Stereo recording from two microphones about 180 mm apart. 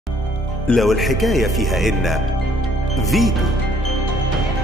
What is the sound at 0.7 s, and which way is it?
Speech, centre (ahead or behind).